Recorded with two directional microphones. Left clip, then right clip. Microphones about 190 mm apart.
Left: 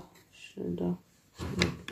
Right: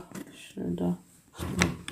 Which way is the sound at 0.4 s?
25° right (ahead or behind).